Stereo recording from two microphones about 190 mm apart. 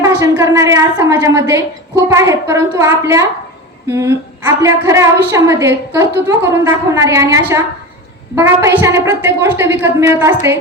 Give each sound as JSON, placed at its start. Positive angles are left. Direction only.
{"t": 0.0, "sound": "a woman's voice", "side_deg": -15}